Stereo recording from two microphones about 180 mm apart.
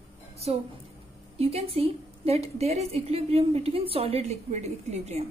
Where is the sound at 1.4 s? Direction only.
35° right (ahead or behind).